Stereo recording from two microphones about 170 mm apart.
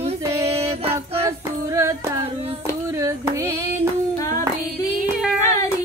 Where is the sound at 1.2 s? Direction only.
20° right (ahead or behind).